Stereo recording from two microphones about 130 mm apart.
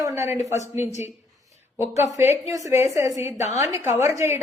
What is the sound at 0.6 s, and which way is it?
Speech, 60° left (ahead or behind).